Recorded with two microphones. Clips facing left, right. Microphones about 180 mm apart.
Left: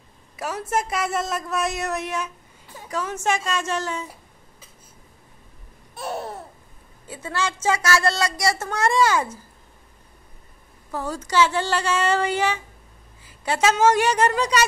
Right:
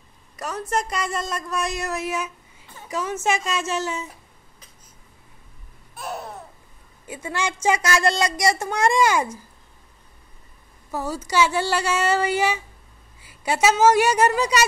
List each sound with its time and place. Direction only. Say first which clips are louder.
0.4 s a woman's voice: left 1 dB; 5° left (ahead or behind)
7.1 s a child's voice: even; 15° right (ahead or behind)
10.9 s a child's voice: right 1 dB; 10° right (ahead or behind)